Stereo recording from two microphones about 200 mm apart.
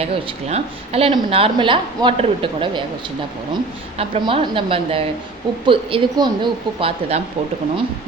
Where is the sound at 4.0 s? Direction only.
25° right (ahead or behind).